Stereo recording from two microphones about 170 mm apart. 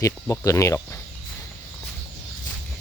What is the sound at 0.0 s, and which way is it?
Speech, 20° left (ahead or behind).